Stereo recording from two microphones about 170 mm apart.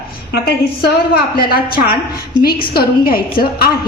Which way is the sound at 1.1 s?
60° left (ahead or behind).